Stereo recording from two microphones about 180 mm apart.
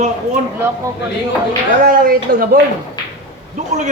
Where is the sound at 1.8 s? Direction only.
55° right (ahead or behind).